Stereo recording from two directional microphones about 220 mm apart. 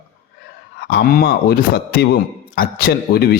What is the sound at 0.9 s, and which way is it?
A man's voice, 45° left (ahead or behind).